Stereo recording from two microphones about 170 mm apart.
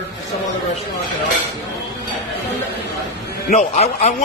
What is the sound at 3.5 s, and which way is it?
Speech, 40° left (ahead or behind).